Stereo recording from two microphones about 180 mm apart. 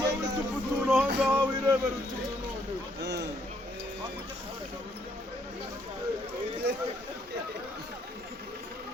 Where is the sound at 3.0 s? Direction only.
70° right (ahead or behind).